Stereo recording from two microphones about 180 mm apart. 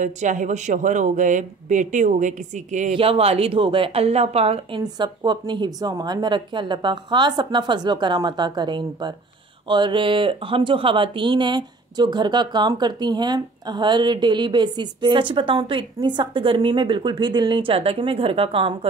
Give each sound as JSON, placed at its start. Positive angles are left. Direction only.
{"t": 0.0, "sound": "speech", "side_deg": -45}
{"t": 3.0, "sound": "speech", "side_deg": -30}